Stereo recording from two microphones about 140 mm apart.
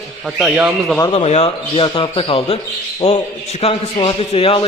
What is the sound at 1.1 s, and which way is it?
A man's voice, 45° left (ahead or behind).